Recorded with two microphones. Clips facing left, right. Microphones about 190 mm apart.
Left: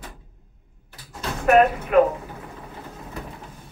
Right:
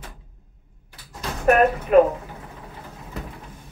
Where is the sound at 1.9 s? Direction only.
35° right (ahead or behind).